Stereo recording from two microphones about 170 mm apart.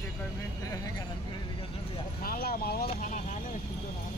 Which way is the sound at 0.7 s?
20° left (ahead or behind).